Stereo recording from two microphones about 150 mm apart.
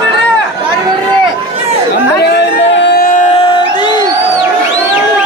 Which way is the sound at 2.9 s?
75° left (ahead or behind).